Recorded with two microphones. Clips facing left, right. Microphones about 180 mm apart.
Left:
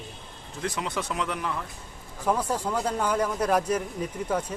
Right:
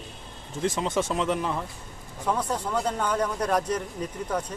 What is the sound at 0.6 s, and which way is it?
Speech, 25° right (ahead or behind).